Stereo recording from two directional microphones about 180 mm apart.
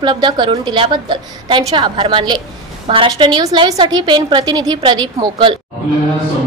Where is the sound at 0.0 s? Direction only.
25° right (ahead or behind).